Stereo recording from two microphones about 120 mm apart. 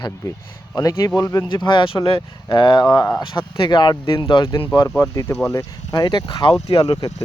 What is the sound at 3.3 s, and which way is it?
Speech, 45° left (ahead or behind).